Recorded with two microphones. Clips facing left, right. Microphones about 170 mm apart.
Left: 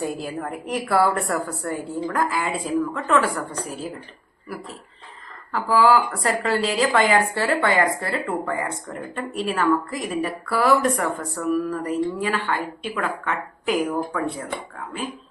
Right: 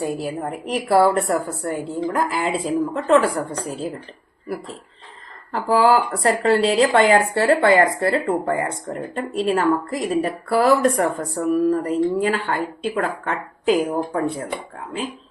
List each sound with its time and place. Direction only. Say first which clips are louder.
0.3 s a woman's voice: right 2 dB; 20° right (ahead or behind)
0.9 s a woman's voice: right 5 dB; 30° right (ahead or behind)
5.5 s speech: right 2 dB; 35° right (ahead or behind)
7.4 s speech: right 5 dB; 40° right (ahead or behind)